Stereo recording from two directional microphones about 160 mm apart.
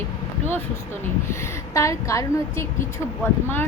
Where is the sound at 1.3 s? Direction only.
20° left (ahead or behind).